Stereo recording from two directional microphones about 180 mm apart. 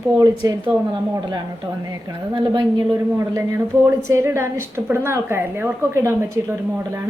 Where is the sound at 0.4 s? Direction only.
20° right (ahead or behind).